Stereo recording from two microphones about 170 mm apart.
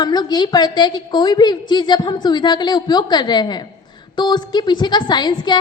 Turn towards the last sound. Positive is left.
turn(degrees=25)  # may be behind; listen again after turning